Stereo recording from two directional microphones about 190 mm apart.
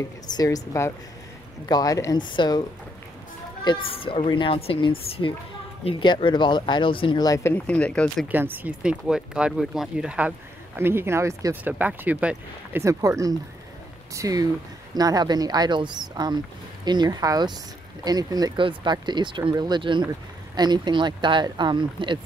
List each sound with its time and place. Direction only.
0.3 s a woman's voice: 20° left (ahead or behind)
3.6 s speech: 25° left (ahead or behind); by 8.3 s 5° left (ahead or behind)
8.3 s speech: 10° right (ahead or behind)